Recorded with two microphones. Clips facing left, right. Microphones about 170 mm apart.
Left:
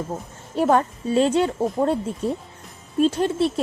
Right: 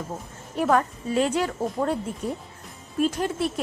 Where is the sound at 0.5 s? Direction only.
30° left (ahead or behind).